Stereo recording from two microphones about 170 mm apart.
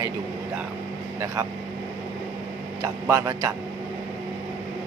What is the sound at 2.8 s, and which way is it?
Speech, 15° right (ahead or behind).